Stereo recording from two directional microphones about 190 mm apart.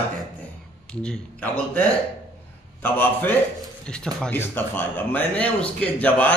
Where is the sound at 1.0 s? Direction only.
5° left (ahead or behind).